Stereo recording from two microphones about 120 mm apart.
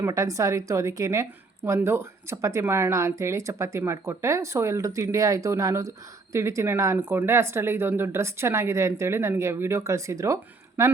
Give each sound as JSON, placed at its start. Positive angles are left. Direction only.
{"t": 0.0, "sound": "a woman's voice", "side_deg": -25}